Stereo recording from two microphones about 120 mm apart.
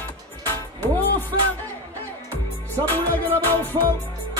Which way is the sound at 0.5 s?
15° left (ahead or behind).